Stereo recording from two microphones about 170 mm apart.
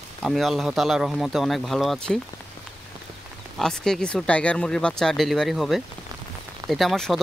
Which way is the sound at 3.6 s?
5° left (ahead or behind).